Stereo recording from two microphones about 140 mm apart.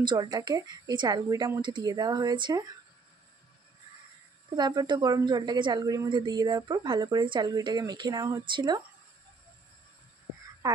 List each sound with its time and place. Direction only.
0.0 s a woman's voice: 30° right (ahead or behind)
4.6 s a woman's voice: 30° right (ahead or behind)
10.6 s speech: 25° right (ahead or behind)